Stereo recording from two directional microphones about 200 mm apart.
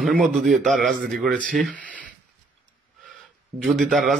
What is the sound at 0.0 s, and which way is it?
A man's voice, centre (ahead or behind).